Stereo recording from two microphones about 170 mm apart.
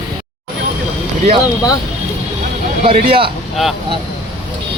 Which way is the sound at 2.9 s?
30° right (ahead or behind).